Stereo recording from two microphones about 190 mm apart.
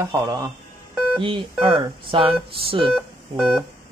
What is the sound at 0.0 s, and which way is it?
A man's voice, 15° right (ahead or behind).